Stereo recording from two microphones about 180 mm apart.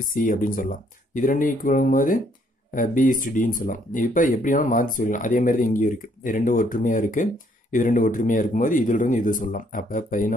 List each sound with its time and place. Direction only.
0.1 s speech: 50° left (ahead or behind)